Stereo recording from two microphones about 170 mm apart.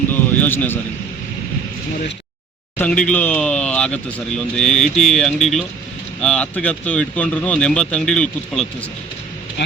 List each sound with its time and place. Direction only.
0.1 s a sound: 10° left (ahead or behind)
2.7 s speech: 10° left (ahead or behind)
9.6 s speech: 90° left